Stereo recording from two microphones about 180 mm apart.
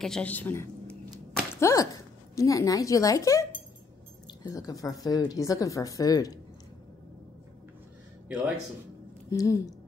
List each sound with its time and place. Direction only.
0.0 s a woman's voice: 5° left (ahead or behind)
8.3 s a man's voice: 5° right (ahead or behind)
9.3 s speech: 20° left (ahead or behind)